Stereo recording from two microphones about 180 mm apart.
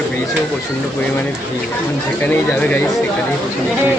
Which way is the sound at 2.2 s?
10° left (ahead or behind).